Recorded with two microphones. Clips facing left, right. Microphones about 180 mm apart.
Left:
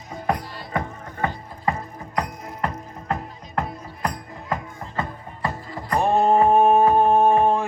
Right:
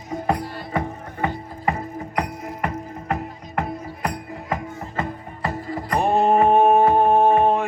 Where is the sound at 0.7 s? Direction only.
15° right (ahead or behind).